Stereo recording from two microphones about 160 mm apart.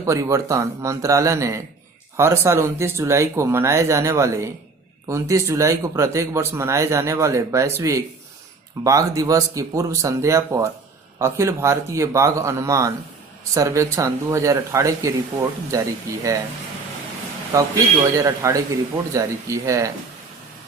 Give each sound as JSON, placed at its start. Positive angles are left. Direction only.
{"t": 0.0, "sound": "speech", "side_deg": -20}
{"t": 17.5, "sound": "speech", "side_deg": -20}